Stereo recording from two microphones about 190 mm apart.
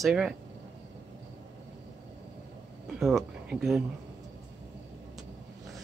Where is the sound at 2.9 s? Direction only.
Centre (ahead or behind).